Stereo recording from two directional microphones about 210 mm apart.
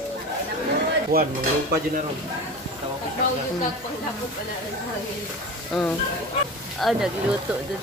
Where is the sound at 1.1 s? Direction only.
45° right (ahead or behind).